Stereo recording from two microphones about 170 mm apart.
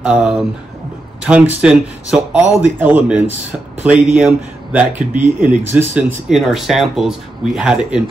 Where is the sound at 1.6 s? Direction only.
5° right (ahead or behind).